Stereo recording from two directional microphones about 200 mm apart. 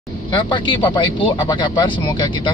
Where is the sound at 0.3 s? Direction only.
25° left (ahead or behind).